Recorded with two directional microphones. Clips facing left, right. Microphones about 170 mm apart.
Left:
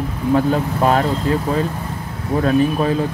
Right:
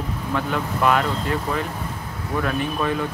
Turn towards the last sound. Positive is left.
turn(degrees=30)  # may be behind; listen again after turning